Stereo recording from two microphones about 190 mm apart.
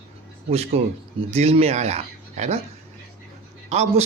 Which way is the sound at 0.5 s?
35° right (ahead or behind).